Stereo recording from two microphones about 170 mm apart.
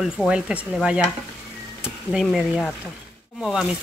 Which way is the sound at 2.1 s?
5° right (ahead or behind).